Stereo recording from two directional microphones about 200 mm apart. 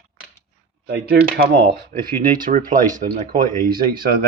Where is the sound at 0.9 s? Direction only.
55° right (ahead or behind).